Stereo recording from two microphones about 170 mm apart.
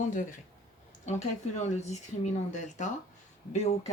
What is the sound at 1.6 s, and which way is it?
Speech, 40° left (ahead or behind).